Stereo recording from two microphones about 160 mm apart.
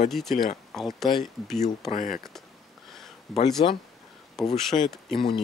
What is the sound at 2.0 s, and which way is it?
Speech, 55° left (ahead or behind).